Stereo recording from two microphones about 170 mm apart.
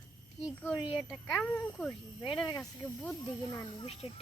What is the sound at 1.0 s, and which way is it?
Speech, centre (ahead or behind).